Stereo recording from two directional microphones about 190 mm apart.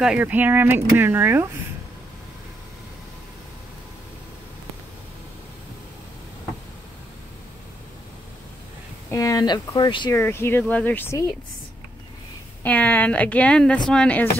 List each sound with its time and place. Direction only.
0.0 s speech: 5° right (ahead or behind)
9.1 s speech: 20° left (ahead or behind)
10.1 s speech: 10° left (ahead or behind)
12.6 s speech: 10° left (ahead or behind)